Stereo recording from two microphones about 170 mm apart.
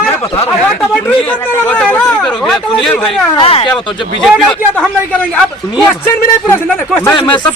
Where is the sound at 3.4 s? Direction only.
35° left (ahead or behind).